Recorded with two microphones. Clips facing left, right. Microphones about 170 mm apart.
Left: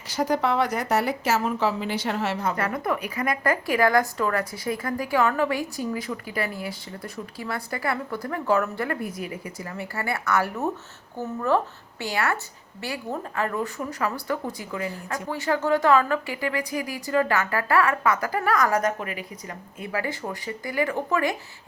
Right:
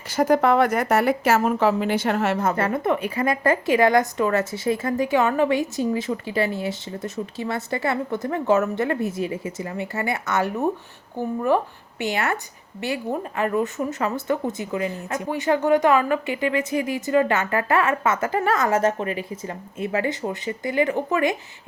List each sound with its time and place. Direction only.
0.1 s speech: 50° right (ahead or behind)
2.6 s a woman's voice: 25° right (ahead or behind)